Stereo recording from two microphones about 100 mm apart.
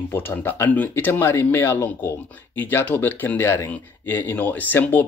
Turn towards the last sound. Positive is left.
turn(degrees=20)  # may be behind; listen again after turning